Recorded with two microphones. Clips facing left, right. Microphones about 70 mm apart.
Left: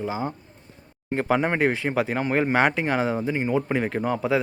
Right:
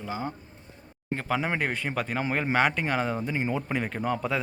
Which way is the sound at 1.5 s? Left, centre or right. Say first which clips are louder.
Left 6 dB; centre.